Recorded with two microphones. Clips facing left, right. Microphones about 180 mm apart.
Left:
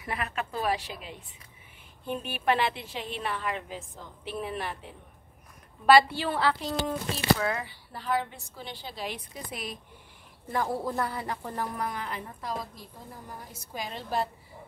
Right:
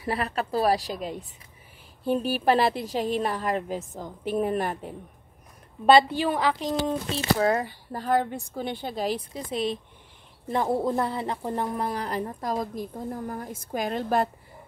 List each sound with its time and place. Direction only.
0.0 s speech: 35° right (ahead or behind)
5.9 s speech: 20° right (ahead or behind)
7.3 s a woman's voice: 40° right (ahead or behind)
9.0 s speech: 30° right (ahead or behind); by 14.3 s 55° right (ahead or behind)